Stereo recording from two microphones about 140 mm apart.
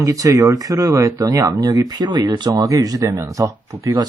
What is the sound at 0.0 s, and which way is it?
Speech, 25° right (ahead or behind).